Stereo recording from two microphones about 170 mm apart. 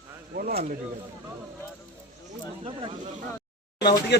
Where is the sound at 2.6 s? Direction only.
35° right (ahead or behind).